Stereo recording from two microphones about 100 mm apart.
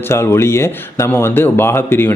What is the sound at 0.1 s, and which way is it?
A man's voice, 25° left (ahead or behind).